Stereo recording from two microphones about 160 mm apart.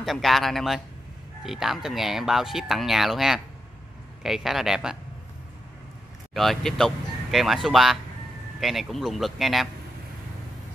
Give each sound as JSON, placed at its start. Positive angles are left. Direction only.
{"t": 0.0, "sound": "speech", "side_deg": 0}
{"t": 6.3, "sound": "speech", "side_deg": 0}